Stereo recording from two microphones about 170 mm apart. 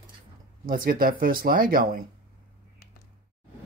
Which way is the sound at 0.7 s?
55° right (ahead or behind).